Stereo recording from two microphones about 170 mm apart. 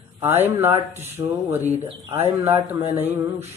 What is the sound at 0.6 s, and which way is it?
Speech, 15° right (ahead or behind).